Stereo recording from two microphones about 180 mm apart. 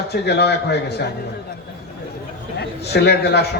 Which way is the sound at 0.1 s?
65° left (ahead or behind).